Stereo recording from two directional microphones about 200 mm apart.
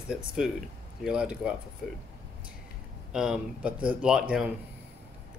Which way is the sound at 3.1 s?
5° right (ahead or behind).